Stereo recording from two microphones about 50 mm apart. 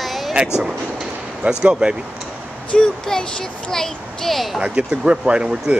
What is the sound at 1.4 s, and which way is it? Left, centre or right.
Speech, centre.